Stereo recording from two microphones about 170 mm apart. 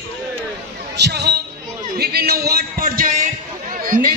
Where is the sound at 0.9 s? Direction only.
80° right.